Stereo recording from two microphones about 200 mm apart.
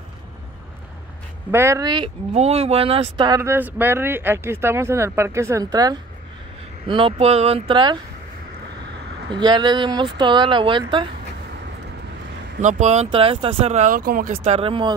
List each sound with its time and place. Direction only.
1.5 s speech: 15° right (ahead or behind)
2.3 s speech: 30° right (ahead or behind)
9.3 s speech: 20° right (ahead or behind)
12.6 s speech: 35° right (ahead or behind)